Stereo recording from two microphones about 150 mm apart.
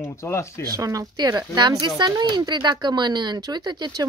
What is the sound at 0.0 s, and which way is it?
Speech, 20° left (ahead or behind).